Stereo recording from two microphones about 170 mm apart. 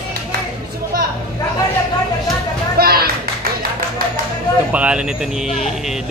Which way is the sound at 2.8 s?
65° right (ahead or behind).